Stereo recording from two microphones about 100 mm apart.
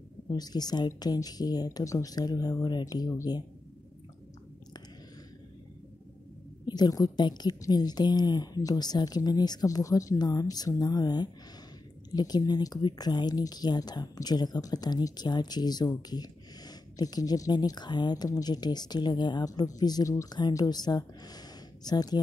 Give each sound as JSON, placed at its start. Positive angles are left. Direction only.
{"t": 0.3, "sound": "speech", "side_deg": 40}
{"t": 6.6, "sound": "speech", "side_deg": 45}